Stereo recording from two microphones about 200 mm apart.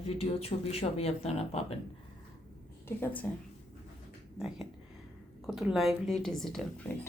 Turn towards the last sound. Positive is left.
turn(degrees=0)  # may be behind; listen again after turning